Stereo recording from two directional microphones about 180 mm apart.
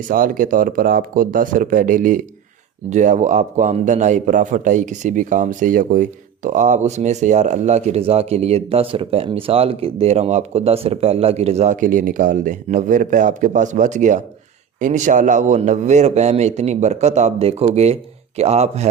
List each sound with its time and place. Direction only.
0.1 s a man's voice: 50° right (ahead or behind)